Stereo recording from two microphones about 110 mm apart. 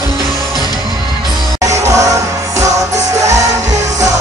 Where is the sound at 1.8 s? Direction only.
30° right (ahead or behind).